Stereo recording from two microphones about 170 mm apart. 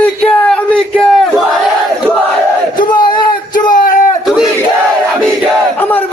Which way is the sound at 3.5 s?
55° left (ahead or behind).